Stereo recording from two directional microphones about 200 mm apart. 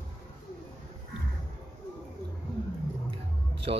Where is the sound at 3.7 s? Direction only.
30° right (ahead or behind).